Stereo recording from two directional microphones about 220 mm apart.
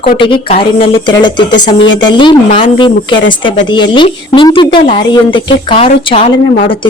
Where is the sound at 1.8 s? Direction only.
55° left (ahead or behind).